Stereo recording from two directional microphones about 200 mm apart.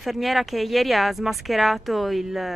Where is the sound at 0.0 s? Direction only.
Centre (ahead or behind).